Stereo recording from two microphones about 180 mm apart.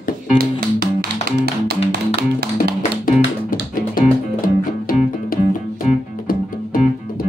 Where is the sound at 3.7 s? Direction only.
50° left (ahead or behind).